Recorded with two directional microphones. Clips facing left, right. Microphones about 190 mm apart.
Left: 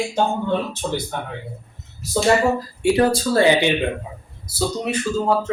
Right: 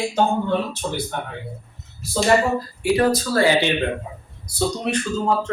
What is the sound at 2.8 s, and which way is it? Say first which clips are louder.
Speech: left 2 dB; 25° left (ahead or behind).